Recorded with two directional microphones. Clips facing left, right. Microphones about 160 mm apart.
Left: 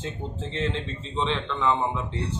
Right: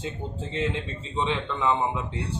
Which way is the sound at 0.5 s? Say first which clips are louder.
Right 1 dB; 10° right (ahead or behind).